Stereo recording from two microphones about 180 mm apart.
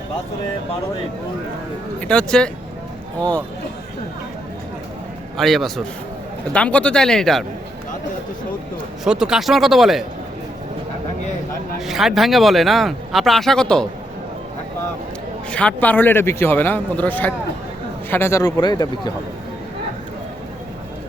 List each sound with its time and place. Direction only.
2.0 s speech: 5° left (ahead or behind)
5.4 s speech: centre (ahead or behind)
9.0 s speech: 5° right (ahead or behind)
11.9 s speech: centre (ahead or behind)
15.4 s speech: 5° left (ahead or behind); by 19.1 s 20° left (ahead or behind)